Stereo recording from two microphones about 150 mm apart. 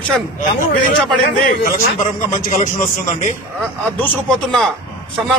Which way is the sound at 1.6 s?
65° left (ahead or behind).